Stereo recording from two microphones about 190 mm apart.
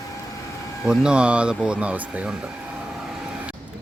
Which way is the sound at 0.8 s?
5° right (ahead or behind).